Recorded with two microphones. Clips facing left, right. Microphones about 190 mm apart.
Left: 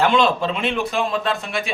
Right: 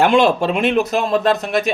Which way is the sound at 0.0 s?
50° right (ahead or behind).